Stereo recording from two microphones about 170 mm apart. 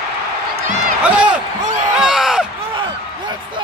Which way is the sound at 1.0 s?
5° right (ahead or behind).